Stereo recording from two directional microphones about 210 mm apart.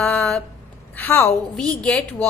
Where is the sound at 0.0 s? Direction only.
5° left (ahead or behind).